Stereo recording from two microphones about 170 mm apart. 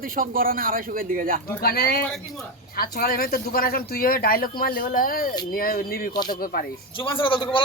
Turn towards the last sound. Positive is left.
turn(degrees=30)  # may be behind; listen again after turning